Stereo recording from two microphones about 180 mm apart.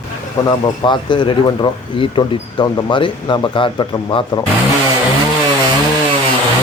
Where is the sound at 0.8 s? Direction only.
25° left (ahead or behind).